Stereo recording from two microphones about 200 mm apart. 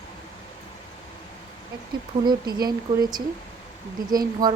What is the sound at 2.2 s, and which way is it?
Speech, 20° right (ahead or behind).